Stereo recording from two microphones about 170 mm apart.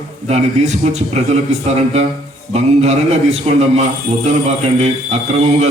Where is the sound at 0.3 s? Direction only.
40° right (ahead or behind).